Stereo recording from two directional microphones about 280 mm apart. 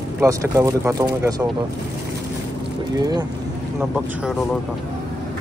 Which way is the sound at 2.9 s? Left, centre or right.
Centre.